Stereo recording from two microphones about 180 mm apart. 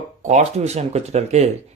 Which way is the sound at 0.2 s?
40° right (ahead or behind).